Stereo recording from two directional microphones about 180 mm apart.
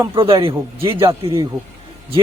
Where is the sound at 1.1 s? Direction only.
30° right (ahead or behind).